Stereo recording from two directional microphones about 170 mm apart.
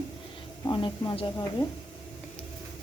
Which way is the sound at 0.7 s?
30° left (ahead or behind).